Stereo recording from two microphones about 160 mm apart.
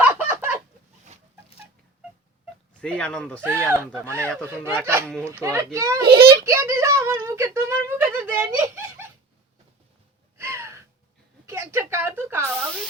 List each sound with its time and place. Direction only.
0.0 s chicken: 10° right (ahead or behind)
2.8 s speech: 5° left (ahead or behind)
3.7 s speech: 15° right (ahead or behind)
5.0 s speech: 5° left (ahead or behind)
5.3 s speech: 15° right (ahead or behind)
6.0 s a child's voice: 90° right
6.4 s speech: 15° right (ahead or behind)
9.0 s a sound: 15° right (ahead or behind)
10.3 s gasp: 15° right (ahead or behind)
11.4 s a sound: 15° right (ahead or behind)
12.5 s a sound: 5° left (ahead or behind)